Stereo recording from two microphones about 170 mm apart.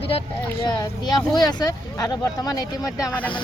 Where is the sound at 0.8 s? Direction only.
25° left (ahead or behind).